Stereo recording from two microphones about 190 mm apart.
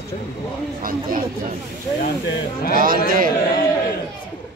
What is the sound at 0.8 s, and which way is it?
Speech, 45° right (ahead or behind).